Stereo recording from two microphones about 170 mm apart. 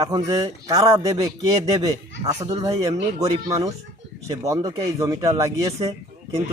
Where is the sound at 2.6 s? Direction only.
20° right (ahead or behind).